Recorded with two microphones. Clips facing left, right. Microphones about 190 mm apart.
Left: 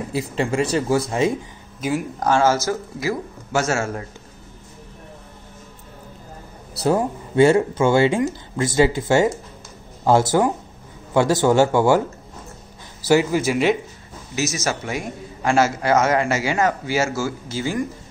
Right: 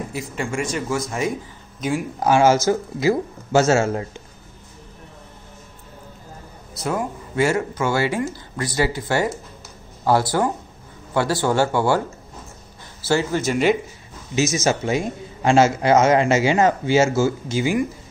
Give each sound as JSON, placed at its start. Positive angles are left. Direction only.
{"t": 0.1, "sound": "speech", "side_deg": 30}
{"t": 1.8, "sound": "speech", "side_deg": 5}
{"t": 2.1, "sound": "a man's voice", "side_deg": -10}
{"t": 6.8, "sound": "speech", "side_deg": 30}
{"t": 13.0, "sound": "speech", "side_deg": 15}
{"t": 14.3, "sound": "a man's voice", "side_deg": -20}